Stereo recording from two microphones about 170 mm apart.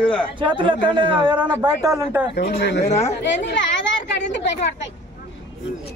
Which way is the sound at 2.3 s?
85° left.